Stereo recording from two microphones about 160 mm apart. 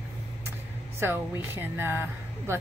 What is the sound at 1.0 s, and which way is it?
A woman's voice, 15° right (ahead or behind).